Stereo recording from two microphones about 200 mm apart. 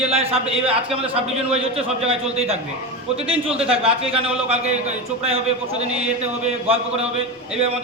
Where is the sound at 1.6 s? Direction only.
30° right (ahead or behind).